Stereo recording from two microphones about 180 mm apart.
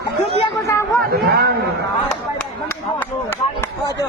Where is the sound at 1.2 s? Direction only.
65° right (ahead or behind).